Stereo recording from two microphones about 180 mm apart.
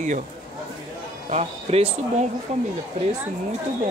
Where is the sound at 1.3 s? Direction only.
35° right (ahead or behind).